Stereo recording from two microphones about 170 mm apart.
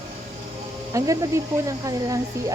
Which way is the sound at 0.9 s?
20° right (ahead or behind).